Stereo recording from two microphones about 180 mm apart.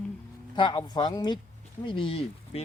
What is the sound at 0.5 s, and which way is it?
Speech, 25° left (ahead or behind).